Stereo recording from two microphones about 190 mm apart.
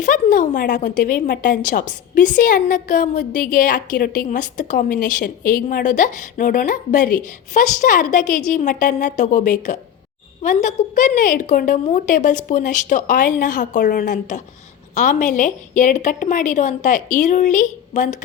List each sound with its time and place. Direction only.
0.0 s a woman's voice: 45° left (ahead or behind)